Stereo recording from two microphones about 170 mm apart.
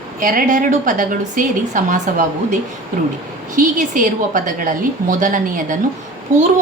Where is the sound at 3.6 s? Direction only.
50° right (ahead or behind).